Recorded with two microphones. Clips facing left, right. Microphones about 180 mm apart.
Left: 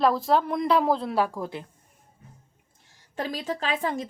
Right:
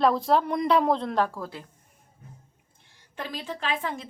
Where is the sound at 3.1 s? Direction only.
40° left (ahead or behind).